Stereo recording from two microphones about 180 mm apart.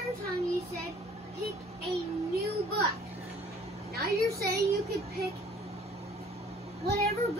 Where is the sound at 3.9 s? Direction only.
60° right (ahead or behind).